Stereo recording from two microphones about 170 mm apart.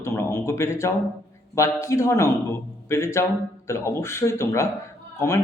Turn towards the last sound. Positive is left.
turn(degrees=15)  # may be behind; listen again after turning